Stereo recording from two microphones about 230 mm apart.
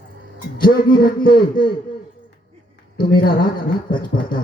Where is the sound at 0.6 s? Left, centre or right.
Centre.